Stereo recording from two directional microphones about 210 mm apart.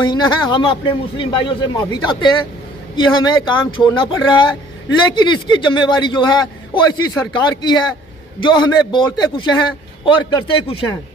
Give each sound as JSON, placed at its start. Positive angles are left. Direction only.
{"t": 0.0, "sound": "a man's voice", "side_deg": 20}